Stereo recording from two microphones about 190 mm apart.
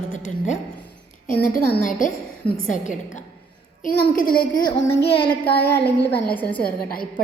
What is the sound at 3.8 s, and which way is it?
A woman's voice, 50° left (ahead or behind).